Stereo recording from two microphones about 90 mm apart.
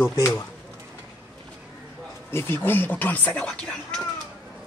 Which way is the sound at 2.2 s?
25° left (ahead or behind).